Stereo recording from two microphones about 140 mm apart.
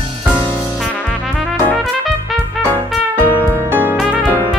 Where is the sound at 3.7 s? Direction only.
15° right (ahead or behind).